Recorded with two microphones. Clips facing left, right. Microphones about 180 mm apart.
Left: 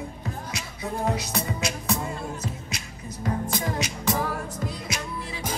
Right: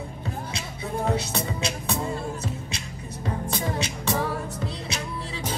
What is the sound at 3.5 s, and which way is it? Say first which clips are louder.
Music: even; 30° right (ahead or behind).